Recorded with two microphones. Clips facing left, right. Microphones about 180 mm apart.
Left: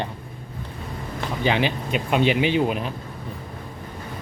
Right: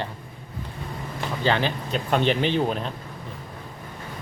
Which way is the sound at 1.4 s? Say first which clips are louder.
Left 1 dB; 15° left (ahead or behind).